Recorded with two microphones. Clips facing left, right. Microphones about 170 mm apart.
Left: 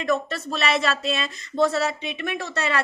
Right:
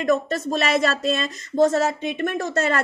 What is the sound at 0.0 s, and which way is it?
Speech, 45° right (ahead or behind).